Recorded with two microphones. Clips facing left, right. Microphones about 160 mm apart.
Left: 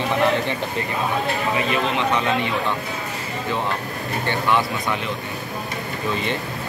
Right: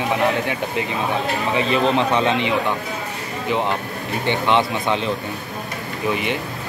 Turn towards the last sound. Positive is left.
turn(degrees=-15)  # may be behind; listen again after turning